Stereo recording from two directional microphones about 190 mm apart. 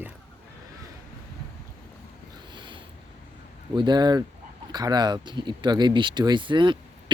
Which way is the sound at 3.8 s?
20° right (ahead or behind).